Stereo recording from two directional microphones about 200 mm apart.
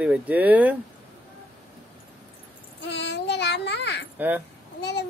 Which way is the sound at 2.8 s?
60° left (ahead or behind).